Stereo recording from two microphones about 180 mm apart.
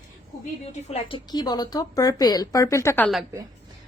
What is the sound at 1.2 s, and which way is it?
Speech, 25° left (ahead or behind).